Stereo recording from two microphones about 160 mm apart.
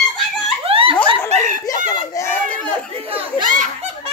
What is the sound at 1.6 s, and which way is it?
Speech, 20° left (ahead or behind).